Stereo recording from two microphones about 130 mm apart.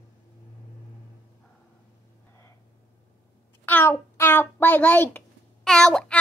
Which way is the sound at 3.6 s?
15° left (ahead or behind).